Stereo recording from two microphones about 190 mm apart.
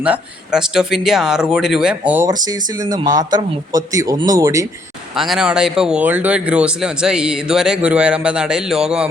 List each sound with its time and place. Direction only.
0.0 s speech: 5° right (ahead or behind)
2.2 s speech: 20° right (ahead or behind)
5.1 s speech: centre (ahead or behind)